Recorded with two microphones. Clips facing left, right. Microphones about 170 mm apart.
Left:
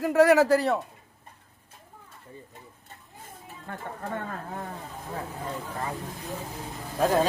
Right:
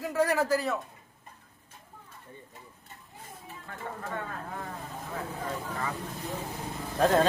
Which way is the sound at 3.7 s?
55° left (ahead or behind).